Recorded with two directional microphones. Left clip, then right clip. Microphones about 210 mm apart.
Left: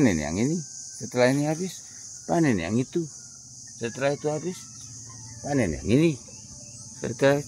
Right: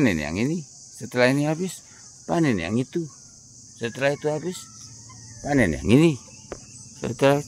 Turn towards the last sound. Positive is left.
turn(degrees=-20)  # may be behind; listen again after turning